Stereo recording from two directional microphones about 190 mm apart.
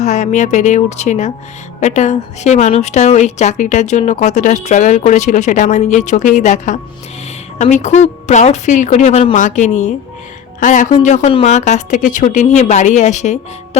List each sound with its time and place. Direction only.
0.0 s a woman's voice: 40° left (ahead or behind)